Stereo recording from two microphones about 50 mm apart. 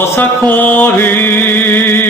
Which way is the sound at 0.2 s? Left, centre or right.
Left.